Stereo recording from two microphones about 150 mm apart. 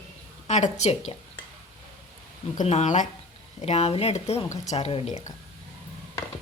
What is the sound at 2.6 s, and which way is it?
Speech, 50° left (ahead or behind).